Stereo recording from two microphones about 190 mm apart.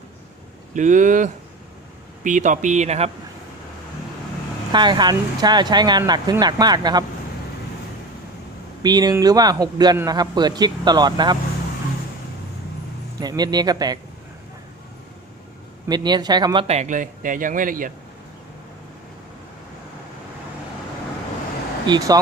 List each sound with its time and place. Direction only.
0.7 s speech: 40° right (ahead or behind)
4.7 s a man's voice: 25° right (ahead or behind)
8.8 s a man's voice: 20° right (ahead or behind)
13.1 s a man's voice: 20° right (ahead or behind)
15.9 s a man's voice: 20° right (ahead or behind)
16.6 s speech: 35° right (ahead or behind)
21.8 s a man's voice: 20° right (ahead or behind)